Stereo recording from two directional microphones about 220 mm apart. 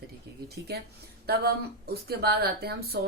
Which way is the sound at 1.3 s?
45° right (ahead or behind).